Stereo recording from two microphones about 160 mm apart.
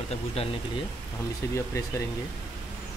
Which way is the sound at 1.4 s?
15° left (ahead or behind).